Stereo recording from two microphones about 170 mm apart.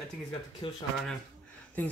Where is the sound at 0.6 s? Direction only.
30° left (ahead or behind).